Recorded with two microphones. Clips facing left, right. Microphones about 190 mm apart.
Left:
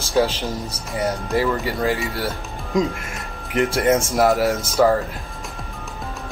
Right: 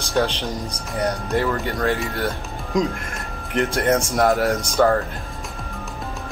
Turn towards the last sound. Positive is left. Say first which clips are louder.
# left 1 dB
turn(degrees=5)  # may be behind; listen again after turning